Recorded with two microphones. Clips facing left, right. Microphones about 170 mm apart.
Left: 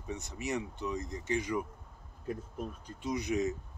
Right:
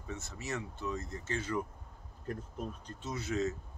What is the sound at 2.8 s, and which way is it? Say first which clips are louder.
Speech: left 5 dB; 15° left (ahead or behind).